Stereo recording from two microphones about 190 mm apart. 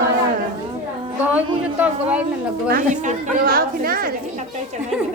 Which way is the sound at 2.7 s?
45° right (ahead or behind).